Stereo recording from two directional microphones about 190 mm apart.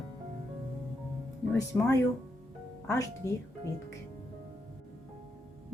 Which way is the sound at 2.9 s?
15° left (ahead or behind).